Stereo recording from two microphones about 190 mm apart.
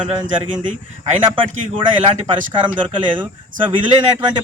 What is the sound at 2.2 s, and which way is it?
Speech, 25° right (ahead or behind).